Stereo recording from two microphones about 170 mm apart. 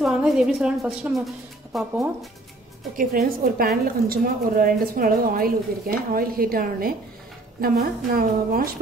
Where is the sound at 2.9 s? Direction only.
60° right (ahead or behind).